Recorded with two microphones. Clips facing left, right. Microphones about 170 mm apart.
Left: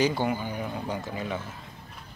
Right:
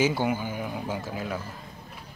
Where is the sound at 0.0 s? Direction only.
5° right (ahead or behind).